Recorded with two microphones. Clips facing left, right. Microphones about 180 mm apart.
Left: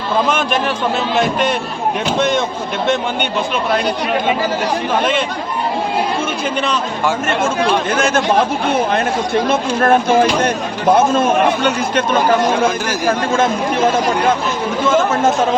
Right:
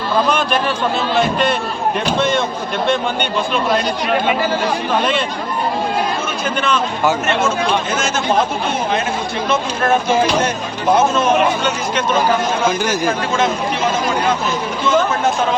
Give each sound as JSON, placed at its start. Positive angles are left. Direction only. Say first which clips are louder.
{"t": 7.9, "sound": "speech", "louder": "left 5 dB", "side_deg": 55}
{"t": 9.5, "sound": "speech", "louder": "left 1 dB", "side_deg": 55}